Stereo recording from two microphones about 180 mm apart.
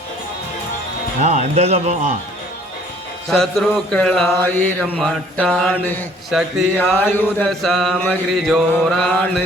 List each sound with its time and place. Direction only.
1.2 s speech: 40° right (ahead or behind)
3.2 s mantra: centre (ahead or behind)
6.3 s mantra: centre (ahead or behind)
6.7 s mantra: 10° left (ahead or behind)